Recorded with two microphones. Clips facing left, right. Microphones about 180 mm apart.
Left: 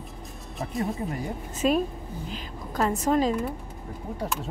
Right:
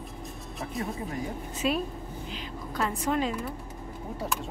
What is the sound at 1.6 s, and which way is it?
A woman's voice, 45° left (ahead or behind).